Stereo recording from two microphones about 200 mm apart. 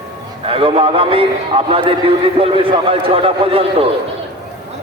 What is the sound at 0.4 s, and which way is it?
A man's voice, 25° right (ahead or behind).